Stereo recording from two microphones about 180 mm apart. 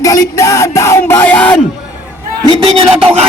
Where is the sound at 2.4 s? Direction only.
30° right (ahead or behind).